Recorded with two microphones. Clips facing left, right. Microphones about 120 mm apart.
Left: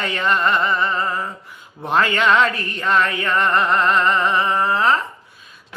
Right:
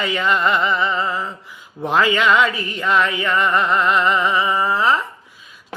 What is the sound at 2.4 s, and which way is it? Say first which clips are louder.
Speech: right 1 dB; 5° right (ahead or behind).